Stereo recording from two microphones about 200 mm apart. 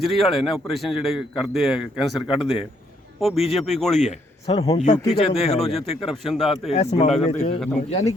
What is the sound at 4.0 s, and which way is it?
Speech, 35° left (ahead or behind).